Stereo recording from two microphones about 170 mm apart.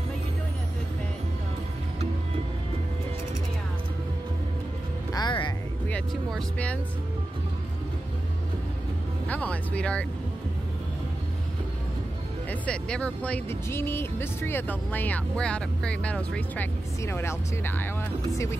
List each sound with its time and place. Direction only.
5.1 s music: 25° left (ahead or behind)
5.9 s speech: 5° left (ahead or behind)
9.3 s speech: 10° left (ahead or behind)
12.4 s speech: 5° left (ahead or behind)